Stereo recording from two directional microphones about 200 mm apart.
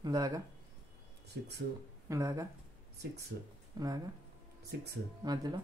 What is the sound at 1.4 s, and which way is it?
Speech, 60° right (ahead or behind).